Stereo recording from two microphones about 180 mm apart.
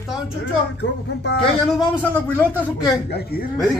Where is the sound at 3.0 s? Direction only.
65° left (ahead or behind).